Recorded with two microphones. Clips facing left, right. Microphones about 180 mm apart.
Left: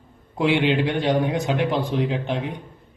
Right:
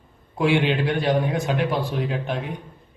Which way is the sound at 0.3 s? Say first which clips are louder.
Left 1 dB; 20° left (ahead or behind).